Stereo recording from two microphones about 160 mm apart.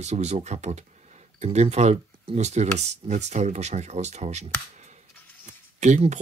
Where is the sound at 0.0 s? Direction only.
45° right (ahead or behind).